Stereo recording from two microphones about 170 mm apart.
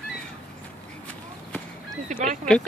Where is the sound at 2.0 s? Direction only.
45° right (ahead or behind).